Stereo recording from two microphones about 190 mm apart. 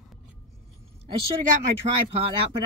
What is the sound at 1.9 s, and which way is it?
Speech, 35° right (ahead or behind).